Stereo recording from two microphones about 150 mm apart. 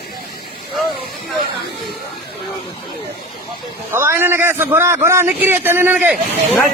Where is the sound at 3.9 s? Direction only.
15° right (ahead or behind).